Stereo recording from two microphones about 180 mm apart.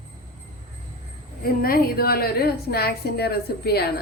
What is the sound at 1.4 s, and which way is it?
A woman's voice, 55° left (ahead or behind).